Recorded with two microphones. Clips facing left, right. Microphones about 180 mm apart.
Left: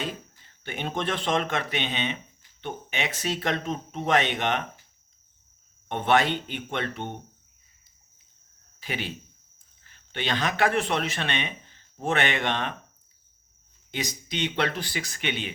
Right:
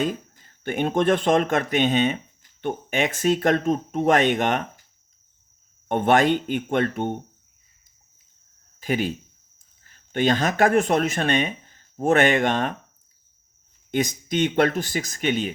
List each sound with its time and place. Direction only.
0.0 s speech: 45° right (ahead or behind)
5.9 s speech: 45° right (ahead or behind)
8.8 s speech: 45° right (ahead or behind)
13.9 s speech: 50° right (ahead or behind)